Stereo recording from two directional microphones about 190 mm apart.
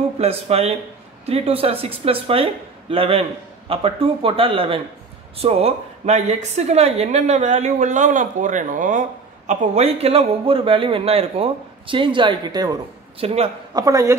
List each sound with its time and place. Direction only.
0.2 s a woman's voice: 35° right (ahead or behind)
13.2 s a woman's voice: 35° right (ahead or behind)
13.7 s speech: 20° right (ahead or behind)